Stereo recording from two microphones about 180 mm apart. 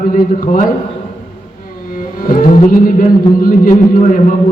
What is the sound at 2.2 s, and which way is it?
A man's voice, 50° left (ahead or behind).